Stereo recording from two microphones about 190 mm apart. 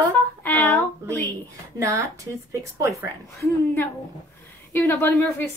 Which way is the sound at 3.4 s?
10° left (ahead or behind).